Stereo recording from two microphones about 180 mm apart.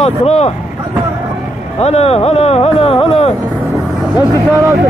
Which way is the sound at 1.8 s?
35° left (ahead or behind).